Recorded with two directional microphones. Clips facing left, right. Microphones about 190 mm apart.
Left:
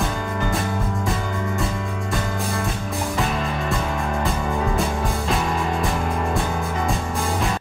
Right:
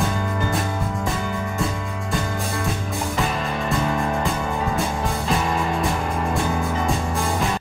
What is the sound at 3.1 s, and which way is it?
Music, centre (ahead or behind).